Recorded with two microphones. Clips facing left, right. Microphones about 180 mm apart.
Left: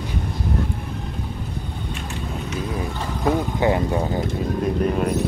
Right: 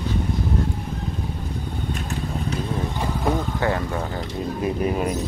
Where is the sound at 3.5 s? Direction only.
15° left (ahead or behind).